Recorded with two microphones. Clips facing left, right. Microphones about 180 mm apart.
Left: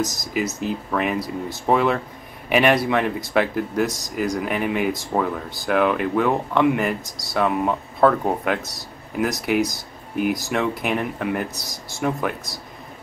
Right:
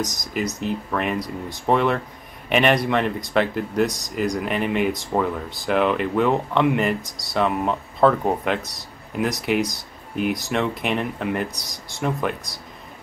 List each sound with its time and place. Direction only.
0.0 s speech: 5° left (ahead or behind)